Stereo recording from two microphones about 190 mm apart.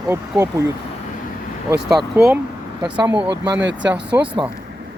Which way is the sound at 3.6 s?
70° right (ahead or behind).